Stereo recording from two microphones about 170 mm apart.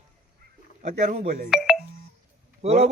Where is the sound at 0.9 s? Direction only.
45° right (ahead or behind).